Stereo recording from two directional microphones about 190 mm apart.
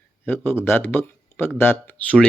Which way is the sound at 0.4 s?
10° left (ahead or behind).